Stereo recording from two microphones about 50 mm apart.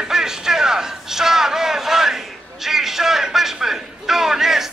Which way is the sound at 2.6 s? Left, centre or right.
Centre.